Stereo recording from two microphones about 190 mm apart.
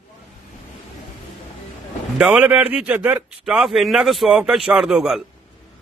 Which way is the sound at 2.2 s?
5° right (ahead or behind).